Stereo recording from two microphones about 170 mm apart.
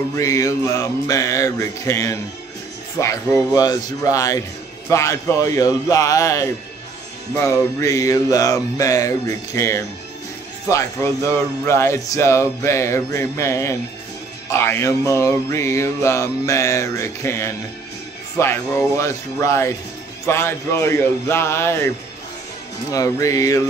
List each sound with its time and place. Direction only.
0.1 s music: 20° left (ahead or behind)
3.5 s music: 20° left (ahead or behind)